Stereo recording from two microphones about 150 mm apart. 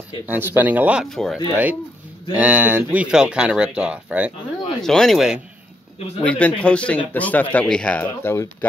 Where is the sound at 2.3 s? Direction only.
10° right (ahead or behind).